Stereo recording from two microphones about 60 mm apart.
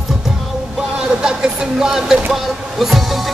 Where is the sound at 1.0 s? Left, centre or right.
Centre.